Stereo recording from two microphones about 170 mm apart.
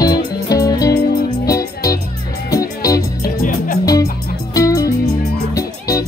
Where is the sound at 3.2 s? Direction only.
55° left (ahead or behind).